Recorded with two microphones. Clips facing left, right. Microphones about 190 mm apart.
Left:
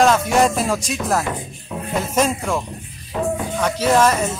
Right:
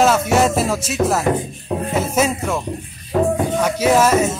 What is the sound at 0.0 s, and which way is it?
Speech, 5° right (ahead or behind).